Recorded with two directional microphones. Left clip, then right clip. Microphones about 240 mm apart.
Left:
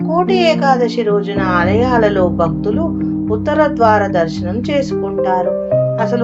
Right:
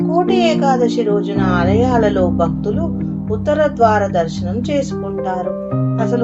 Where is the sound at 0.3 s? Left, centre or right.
Left.